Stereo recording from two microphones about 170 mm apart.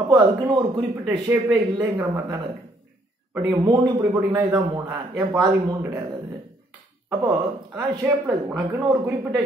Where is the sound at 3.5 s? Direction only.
20° right (ahead or behind).